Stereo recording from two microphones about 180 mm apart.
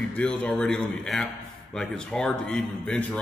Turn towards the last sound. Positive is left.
turn(degrees=5)  # may be behind; listen again after turning